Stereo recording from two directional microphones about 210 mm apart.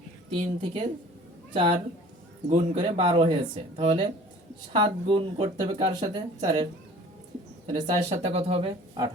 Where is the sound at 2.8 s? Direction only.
25° right (ahead or behind).